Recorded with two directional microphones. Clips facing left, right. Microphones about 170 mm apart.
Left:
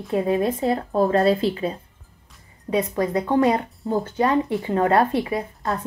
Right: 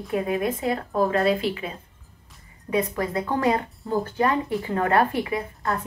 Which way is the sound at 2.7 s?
20° left (ahead or behind).